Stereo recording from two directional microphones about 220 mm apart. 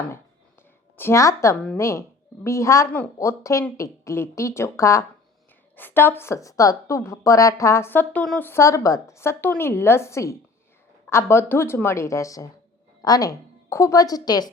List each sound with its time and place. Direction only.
0.9 s a woman's voice: 10° left (ahead or behind)